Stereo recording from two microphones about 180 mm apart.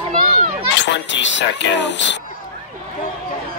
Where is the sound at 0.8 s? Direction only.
80° left.